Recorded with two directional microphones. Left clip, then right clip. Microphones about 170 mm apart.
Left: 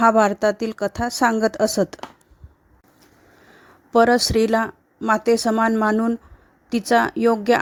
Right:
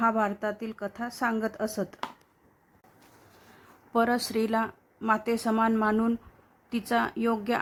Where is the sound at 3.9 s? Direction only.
40° left (ahead or behind).